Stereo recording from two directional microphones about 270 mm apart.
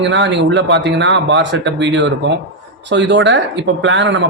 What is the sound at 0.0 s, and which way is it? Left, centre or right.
Speech, right.